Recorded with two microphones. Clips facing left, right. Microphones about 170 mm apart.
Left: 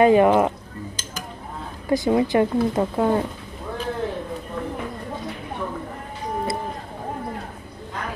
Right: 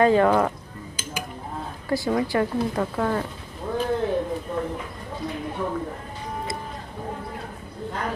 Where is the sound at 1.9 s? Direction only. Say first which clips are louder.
Left 4 dB; 20° left (ahead or behind).